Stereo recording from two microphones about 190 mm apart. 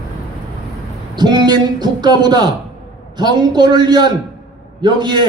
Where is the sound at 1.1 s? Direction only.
20° right (ahead or behind).